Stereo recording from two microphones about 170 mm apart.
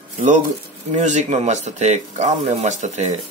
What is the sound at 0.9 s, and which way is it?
Speech, 45° right (ahead or behind).